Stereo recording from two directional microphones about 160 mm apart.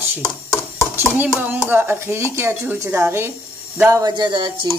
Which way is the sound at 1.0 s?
10° right (ahead or behind).